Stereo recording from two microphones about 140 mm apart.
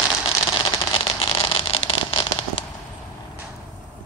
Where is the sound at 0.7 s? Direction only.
40° left (ahead or behind).